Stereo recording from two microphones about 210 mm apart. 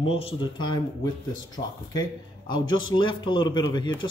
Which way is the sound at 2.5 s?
20° left (ahead or behind).